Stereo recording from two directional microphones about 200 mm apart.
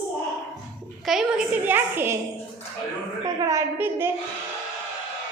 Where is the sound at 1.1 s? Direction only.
5° right (ahead or behind).